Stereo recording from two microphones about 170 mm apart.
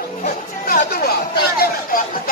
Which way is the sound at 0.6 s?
60° left (ahead or behind).